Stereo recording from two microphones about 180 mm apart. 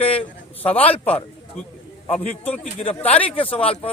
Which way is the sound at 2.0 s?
40° left (ahead or behind).